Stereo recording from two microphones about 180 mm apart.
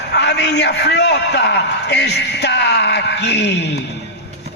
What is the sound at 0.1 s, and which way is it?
A man's voice, 70° left (ahead or behind).